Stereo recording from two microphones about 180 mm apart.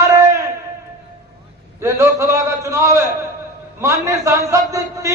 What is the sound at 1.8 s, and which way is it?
A man's voice, 15° right (ahead or behind).